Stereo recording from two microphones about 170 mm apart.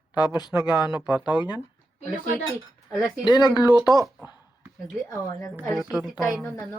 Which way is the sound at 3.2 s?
25° left (ahead or behind).